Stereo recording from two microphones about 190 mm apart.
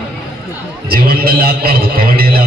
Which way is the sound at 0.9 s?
50° right (ahead or behind).